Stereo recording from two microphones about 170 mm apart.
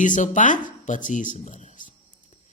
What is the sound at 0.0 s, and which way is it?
Speech, 50° left (ahead or behind).